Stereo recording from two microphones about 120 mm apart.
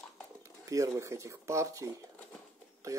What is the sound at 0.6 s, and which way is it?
A man's voice, 25° right (ahead or behind).